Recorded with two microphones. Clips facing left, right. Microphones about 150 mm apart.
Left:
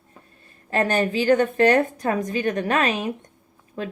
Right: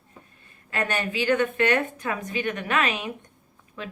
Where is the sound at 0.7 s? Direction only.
40° left (ahead or behind).